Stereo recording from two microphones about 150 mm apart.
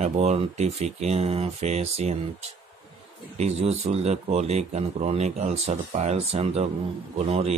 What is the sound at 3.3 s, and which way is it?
Speech, 45° right (ahead or behind).